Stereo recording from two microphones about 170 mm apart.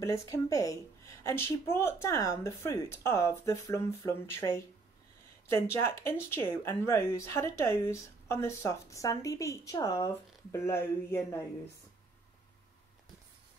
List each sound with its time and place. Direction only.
0.0 s speech: 15° left (ahead or behind)